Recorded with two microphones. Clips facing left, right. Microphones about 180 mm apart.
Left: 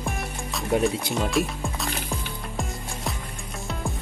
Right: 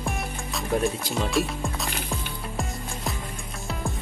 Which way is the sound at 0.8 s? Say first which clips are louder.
Left 2 dB; centre (ahead or behind).